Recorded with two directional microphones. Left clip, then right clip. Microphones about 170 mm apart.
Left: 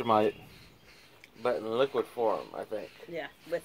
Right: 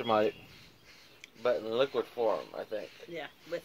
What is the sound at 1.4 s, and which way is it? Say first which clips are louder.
Speech: left 1 dB; 20° left (ahead or behind).